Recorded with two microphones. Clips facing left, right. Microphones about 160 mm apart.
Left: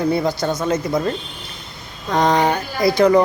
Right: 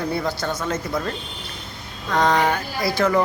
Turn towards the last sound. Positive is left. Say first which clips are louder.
# left 6 dB
turn(degrees=15)  # may be behind; listen again after turning